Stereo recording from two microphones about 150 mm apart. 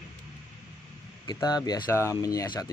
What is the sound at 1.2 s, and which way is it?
Speech, 25° left (ahead or behind).